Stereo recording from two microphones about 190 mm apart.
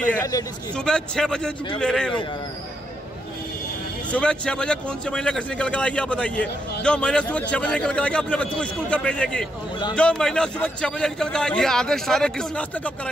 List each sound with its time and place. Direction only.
0.2 s a man's voice: 15° left (ahead or behind)
0.7 s a man's voice: 5° left (ahead or behind)
4.1 s a man's voice: 5° left (ahead or behind)